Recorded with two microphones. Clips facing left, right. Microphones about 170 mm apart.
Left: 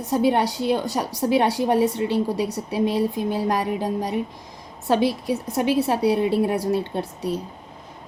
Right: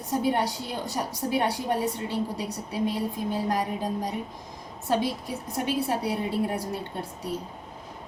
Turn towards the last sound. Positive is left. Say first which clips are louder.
# left 7 dB
turn(degrees=75)  # may be behind; listen again after turning